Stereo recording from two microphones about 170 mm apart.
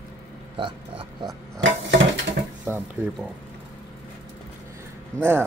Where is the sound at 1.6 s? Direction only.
90° right.